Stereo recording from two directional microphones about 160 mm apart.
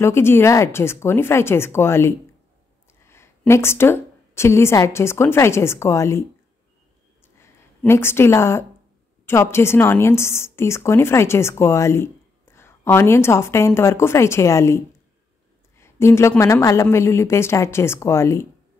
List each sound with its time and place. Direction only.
0.0 s a woman's voice: 15° left (ahead or behind)
7.8 s a woman's voice: 15° left (ahead or behind)
15.8 s a woman's voice: 15° left (ahead or behind)